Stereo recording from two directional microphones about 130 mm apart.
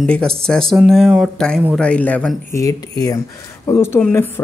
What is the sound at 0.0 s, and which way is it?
Speech, 5° left (ahead or behind).